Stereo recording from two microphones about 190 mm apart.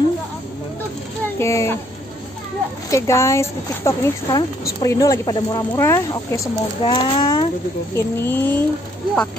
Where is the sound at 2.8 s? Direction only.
15° left (ahead or behind).